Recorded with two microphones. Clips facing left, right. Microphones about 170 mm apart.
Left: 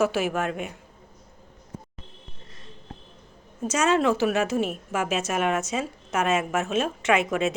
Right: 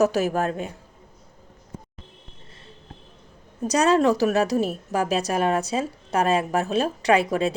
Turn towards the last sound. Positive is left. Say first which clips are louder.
# right 3 dB
turn(degrees=-35)  # may be behind; listen again after turning